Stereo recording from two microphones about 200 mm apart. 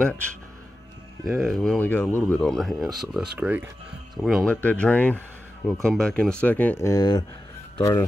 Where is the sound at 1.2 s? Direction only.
Centre (ahead or behind).